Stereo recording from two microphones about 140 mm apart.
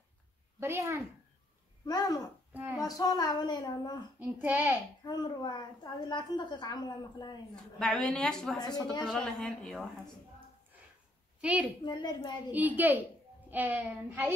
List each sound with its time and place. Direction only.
0.6 s a woman's voice: 20° right (ahead or behind)
1.9 s speech: 25° left (ahead or behind)
4.2 s a child's voice: 10° right (ahead or behind)
5.0 s a woman's voice: 30° left (ahead or behind)
7.8 s speech: 5° left (ahead or behind)
8.5 s speech: 30° left (ahead or behind)
9.0 s speech: 5° left (ahead or behind)
11.4 s a child's voice: 10° right (ahead or behind)
11.8 s a woman's voice: 30° left (ahead or behind)
12.5 s a child's voice: 10° right (ahead or behind)